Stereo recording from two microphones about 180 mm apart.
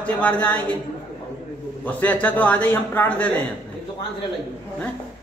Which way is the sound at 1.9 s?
10° left (ahead or behind).